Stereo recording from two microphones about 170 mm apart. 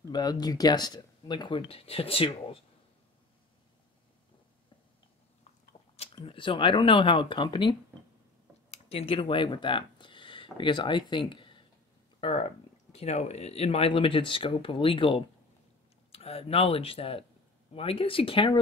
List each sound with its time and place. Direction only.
0.1 s speech: 25° left (ahead or behind)
6.1 s speech: 30° left (ahead or behind)
8.6 s speech: 40° left (ahead or behind)